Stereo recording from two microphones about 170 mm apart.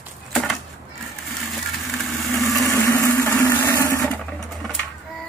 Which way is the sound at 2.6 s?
15° left (ahead or behind).